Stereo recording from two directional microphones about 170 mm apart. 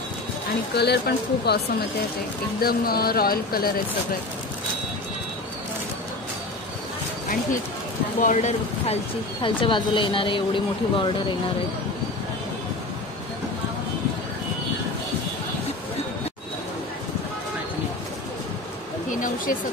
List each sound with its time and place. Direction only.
0.7 s speech: 75° left (ahead or behind)
8.2 s speech: 45° left (ahead or behind)
9.4 s speech: 30° left (ahead or behind)
19.1 s a sound: 50° left (ahead or behind)